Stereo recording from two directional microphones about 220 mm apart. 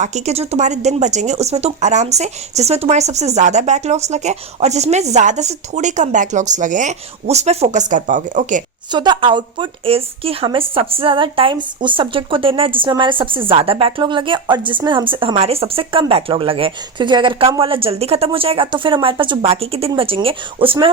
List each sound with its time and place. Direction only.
0.0 s a woman's voice: 30° right (ahead or behind)
8.9 s speech: 20° right (ahead or behind)